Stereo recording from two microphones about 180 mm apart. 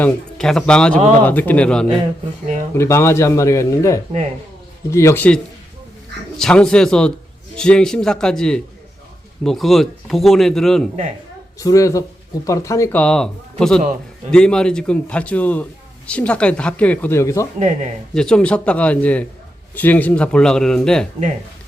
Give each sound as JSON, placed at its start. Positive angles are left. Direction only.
{"t": 0.0, "sound": "speech", "side_deg": 5}
{"t": 11.6, "sound": "speech", "side_deg": 20}
{"t": 17.6, "sound": "speech", "side_deg": -40}
{"t": 18.1, "sound": "speech", "side_deg": 5}